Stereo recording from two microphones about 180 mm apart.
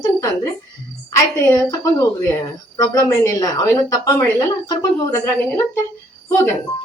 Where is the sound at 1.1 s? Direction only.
20° left (ahead or behind).